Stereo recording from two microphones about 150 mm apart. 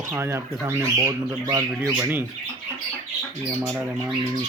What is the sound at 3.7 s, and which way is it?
Speech, 15° right (ahead or behind).